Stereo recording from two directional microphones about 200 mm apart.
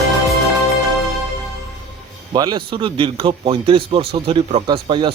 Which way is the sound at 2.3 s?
20° right (ahead or behind).